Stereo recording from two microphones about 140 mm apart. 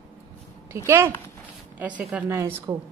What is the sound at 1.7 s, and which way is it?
Speech, 10° right (ahead or behind).